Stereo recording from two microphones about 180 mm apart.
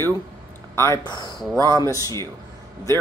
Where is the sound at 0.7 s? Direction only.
15° left (ahead or behind).